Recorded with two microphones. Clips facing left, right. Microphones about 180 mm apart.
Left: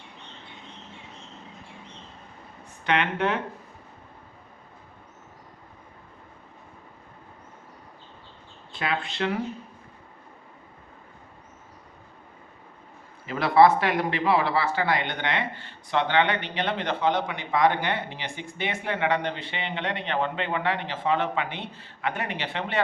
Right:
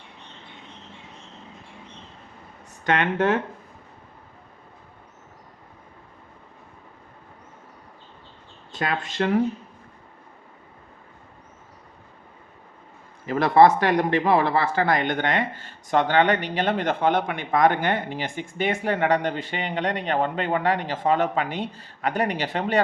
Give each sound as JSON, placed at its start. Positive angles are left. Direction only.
{"t": 2.8, "sound": "speech", "side_deg": -45}
{"t": 8.7, "sound": "speech", "side_deg": -45}
{"t": 13.2, "sound": "speech", "side_deg": -45}